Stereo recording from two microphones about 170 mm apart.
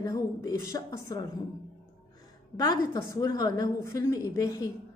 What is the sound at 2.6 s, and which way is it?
A woman's voice, 20° left (ahead or behind).